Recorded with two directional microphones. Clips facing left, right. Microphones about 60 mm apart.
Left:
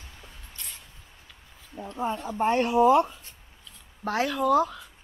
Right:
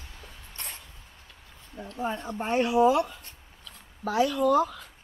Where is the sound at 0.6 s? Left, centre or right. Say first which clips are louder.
Right 4 dB; right.